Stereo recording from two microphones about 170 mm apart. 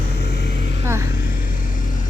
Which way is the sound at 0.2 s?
80° left.